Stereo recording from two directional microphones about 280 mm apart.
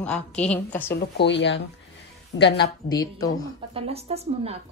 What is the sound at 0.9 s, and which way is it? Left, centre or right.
Speech, left.